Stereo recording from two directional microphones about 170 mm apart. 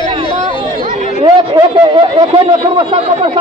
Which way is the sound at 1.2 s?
25° right (ahead or behind).